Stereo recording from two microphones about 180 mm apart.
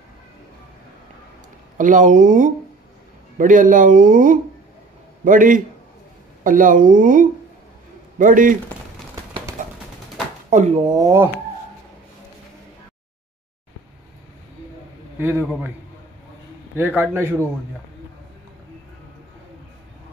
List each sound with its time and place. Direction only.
1.8 s speech: 45° right (ahead or behind)
10.9 s speech: 20° right (ahead or behind)
15.1 s a man's voice: 15° right (ahead or behind)
16.7 s a man's voice: 10° right (ahead or behind)